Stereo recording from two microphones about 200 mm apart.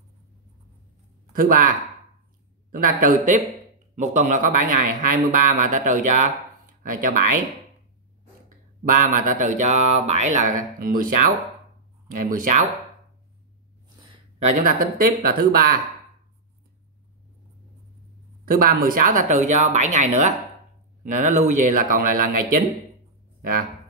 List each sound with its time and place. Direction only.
1.2 s speech: 45° right (ahead or behind)
2.7 s speech: 40° right (ahead or behind)
8.5 s speech: 45° right (ahead or behind)
14.6 s speech: 45° right (ahead or behind)
18.4 s speech: 45° right (ahead or behind)